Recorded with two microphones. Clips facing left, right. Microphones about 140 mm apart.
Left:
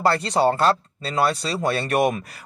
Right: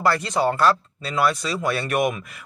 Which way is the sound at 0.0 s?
30° left (ahead or behind).